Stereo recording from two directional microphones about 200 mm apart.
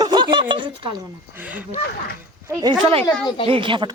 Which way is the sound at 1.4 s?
10° right (ahead or behind).